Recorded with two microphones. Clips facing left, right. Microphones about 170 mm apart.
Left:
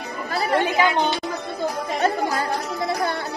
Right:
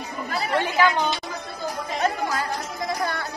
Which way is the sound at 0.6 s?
20° left (ahead or behind).